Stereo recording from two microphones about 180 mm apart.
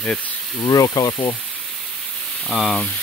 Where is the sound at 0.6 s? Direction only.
20° left (ahead or behind).